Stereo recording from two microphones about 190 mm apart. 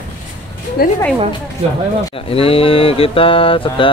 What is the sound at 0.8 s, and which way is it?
Speech, 55° left (ahead or behind).